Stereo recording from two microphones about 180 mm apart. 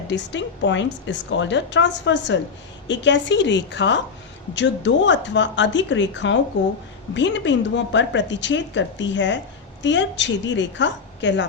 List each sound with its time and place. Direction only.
0.1 s a woman's voice: 85° left